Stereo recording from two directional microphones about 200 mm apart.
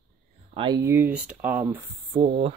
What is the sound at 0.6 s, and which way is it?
Speech, 20° right (ahead or behind).